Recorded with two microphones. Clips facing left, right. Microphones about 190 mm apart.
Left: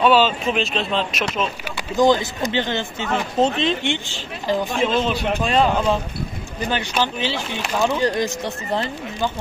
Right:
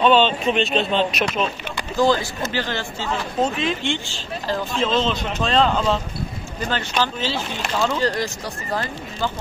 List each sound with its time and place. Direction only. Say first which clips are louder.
0.0 s speech: even; 5° left (ahead or behind)
2.0 s speech: left 2 dB; 20° left (ahead or behind)